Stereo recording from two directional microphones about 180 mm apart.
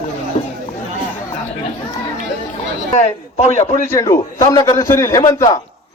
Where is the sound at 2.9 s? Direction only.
40° left (ahead or behind).